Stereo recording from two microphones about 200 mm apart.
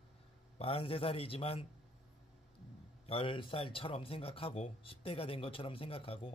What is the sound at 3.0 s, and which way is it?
Speech, 25° left (ahead or behind).